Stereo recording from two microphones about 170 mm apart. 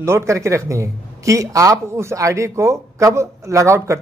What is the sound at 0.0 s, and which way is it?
A man's voice, 15° right (ahead or behind).